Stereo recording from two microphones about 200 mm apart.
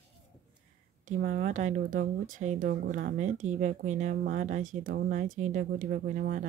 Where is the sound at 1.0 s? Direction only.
40° right (ahead or behind).